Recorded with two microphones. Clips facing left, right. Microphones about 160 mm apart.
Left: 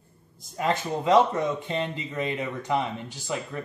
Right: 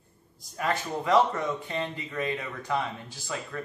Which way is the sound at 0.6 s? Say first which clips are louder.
Left 3 dB; 20° left (ahead or behind).